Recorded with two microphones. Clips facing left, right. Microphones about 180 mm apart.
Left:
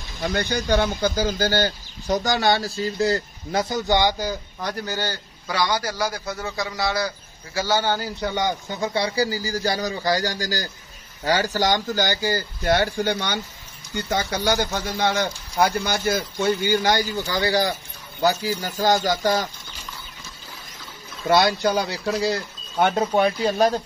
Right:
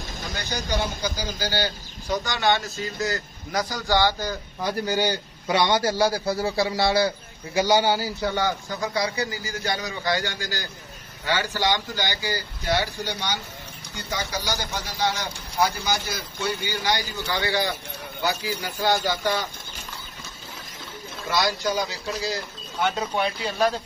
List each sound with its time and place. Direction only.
0.3 s speech: 55° left (ahead or behind); by 4.4 s 15° left (ahead or behind)
4.6 s a man's voice: 10° right (ahead or behind); by 7.2 s 30° right (ahead or behind)
7.5 s speech: 15° right (ahead or behind)
8.3 s speech: 15° left (ahead or behind); by 19.4 s 40° left (ahead or behind)
21.3 s speech: 60° left (ahead or behind); by 23.7 s 40° left (ahead or behind)